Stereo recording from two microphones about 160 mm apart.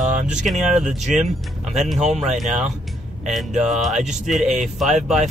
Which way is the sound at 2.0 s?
45° right (ahead or behind).